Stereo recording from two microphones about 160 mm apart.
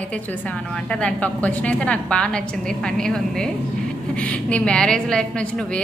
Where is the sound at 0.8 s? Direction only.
5° left (ahead or behind).